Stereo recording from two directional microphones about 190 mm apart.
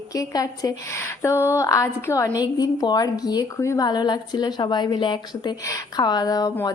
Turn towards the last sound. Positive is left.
turn(degrees=20)  # may be behind; listen again after turning